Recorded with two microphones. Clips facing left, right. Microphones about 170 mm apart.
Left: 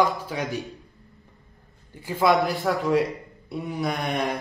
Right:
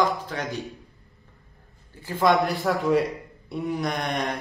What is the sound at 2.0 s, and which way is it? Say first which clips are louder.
A man's voice: even; 10° left (ahead or behind).